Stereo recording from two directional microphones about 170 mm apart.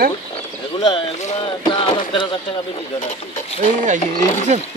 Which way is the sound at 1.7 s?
25° left (ahead or behind).